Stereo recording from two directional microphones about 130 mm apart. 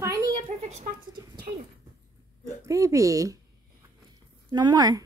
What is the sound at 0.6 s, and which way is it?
Speech, 65° right (ahead or behind).